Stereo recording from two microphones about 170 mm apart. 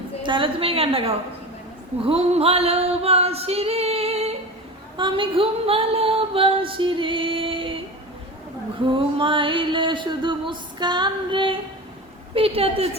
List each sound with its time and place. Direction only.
0.3 s female singing: 30° right (ahead or behind)
8.9 s a sound: 30° right (ahead or behind)
12.3 s female singing: 35° right (ahead or behind)